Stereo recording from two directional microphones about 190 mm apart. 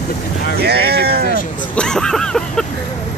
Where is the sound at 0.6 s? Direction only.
55° right (ahead or behind).